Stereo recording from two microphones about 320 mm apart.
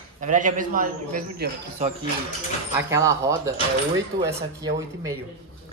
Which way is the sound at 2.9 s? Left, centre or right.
Centre.